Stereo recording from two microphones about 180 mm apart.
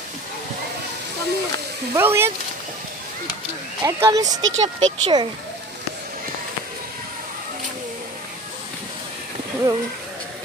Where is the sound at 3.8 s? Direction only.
15° right (ahead or behind).